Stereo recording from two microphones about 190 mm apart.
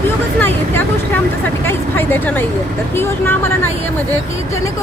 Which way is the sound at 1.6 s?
10° left (ahead or behind).